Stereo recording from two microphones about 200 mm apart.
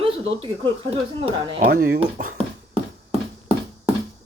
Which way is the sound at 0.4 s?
25° right (ahead or behind).